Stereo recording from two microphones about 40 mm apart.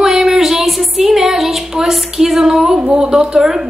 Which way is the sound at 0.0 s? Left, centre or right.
Centre.